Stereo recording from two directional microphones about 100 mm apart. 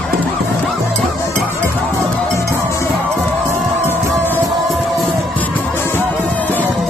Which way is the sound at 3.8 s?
20° left (ahead or behind).